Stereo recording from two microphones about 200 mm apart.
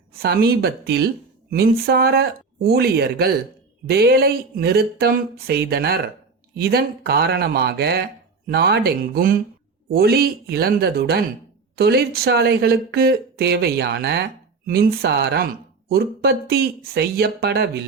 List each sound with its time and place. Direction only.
0.2 s speech: 50° right (ahead or behind)